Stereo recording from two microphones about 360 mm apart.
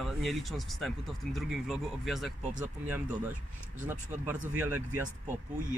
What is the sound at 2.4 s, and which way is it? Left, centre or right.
Speech, right.